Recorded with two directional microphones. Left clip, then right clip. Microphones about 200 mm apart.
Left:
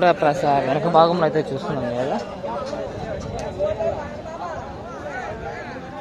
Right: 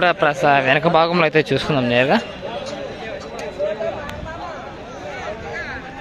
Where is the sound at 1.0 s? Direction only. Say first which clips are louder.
Right 1 dB; 20° right (ahead or behind).